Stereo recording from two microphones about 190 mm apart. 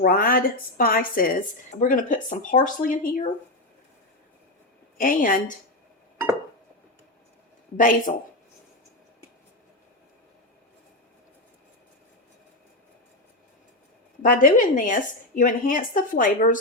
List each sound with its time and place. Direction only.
0.0 s speech: 50° left (ahead or behind)
4.9 s speech: 45° left (ahead or behind)
7.8 s speech: 45° left (ahead or behind)
14.2 s speech: 45° left (ahead or behind)